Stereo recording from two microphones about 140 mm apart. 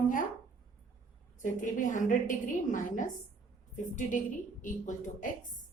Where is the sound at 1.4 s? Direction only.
65° left (ahead or behind).